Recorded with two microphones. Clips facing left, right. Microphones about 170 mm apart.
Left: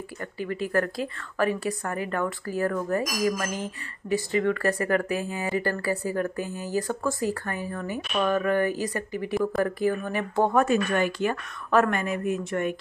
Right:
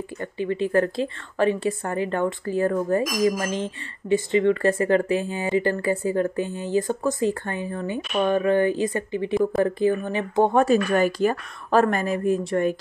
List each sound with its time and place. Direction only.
0.2 s a woman's voice: 25° right (ahead or behind)
10.6 s a woman's voice: 35° right (ahead or behind)